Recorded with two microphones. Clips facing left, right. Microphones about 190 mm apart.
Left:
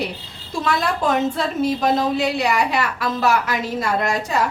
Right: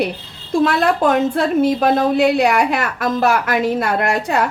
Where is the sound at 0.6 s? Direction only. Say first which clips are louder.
Right 5 dB; 60° right (ahead or behind).